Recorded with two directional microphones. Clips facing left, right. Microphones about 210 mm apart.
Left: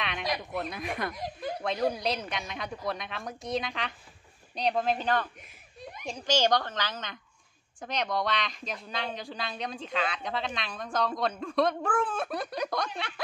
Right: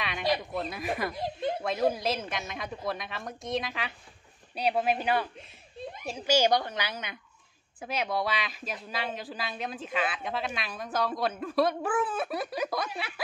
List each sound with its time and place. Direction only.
0.0 s a sound: centre (ahead or behind)
0.6 s speech: centre (ahead or behind)
1.1 s speech: 30° right (ahead or behind)
1.6 s speech: centre (ahead or behind)